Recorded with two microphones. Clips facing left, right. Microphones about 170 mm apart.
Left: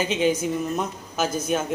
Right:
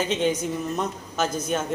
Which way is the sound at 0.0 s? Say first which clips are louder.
Left 2 dB; 5° left (ahead or behind).